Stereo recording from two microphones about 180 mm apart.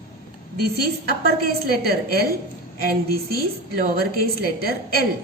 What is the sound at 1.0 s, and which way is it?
A woman's voice, 60° right (ahead or behind).